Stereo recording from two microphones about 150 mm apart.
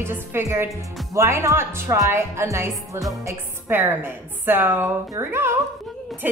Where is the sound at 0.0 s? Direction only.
15° right (ahead or behind).